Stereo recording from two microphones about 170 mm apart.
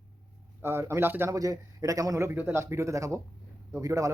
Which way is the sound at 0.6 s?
15° right (ahead or behind).